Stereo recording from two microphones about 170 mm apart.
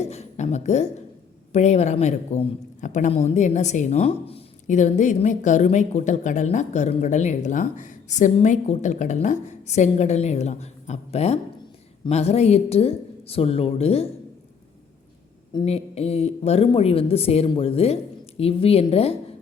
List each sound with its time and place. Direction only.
0.0 s a sound: 40° left (ahead or behind)
1.5 s a man's voice: 40° left (ahead or behind)
15.6 s a woman's voice: 35° left (ahead or behind)